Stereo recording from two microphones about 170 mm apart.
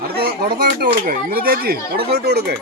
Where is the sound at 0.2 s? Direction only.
65° right (ahead or behind).